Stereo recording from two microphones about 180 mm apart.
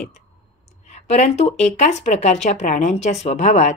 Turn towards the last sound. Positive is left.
turn(degrees=40)  # may be behind; listen again after turning